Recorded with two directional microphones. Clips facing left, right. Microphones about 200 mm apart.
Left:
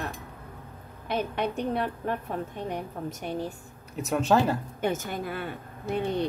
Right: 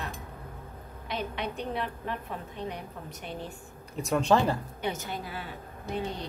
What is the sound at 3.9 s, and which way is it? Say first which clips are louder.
Speech: left 1 dB; 5° left (ahead or behind).